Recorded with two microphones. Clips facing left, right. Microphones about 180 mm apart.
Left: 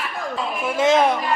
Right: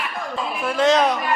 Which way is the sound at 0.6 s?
5° left (ahead or behind).